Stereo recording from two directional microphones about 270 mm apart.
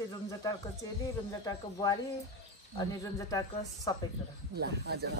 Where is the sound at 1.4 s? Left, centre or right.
Centre.